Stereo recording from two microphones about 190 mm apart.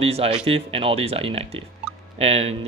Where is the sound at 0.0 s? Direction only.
30° right (ahead or behind).